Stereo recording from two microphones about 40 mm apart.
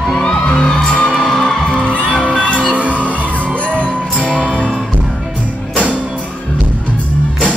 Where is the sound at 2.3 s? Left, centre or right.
Left.